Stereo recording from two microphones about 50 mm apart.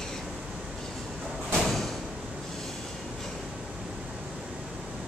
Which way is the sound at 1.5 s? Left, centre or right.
Centre.